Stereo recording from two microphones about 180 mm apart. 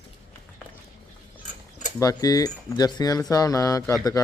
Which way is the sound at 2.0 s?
20° left (ahead or behind).